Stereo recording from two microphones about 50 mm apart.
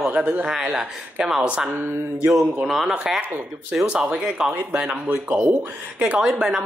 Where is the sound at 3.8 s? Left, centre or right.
Right.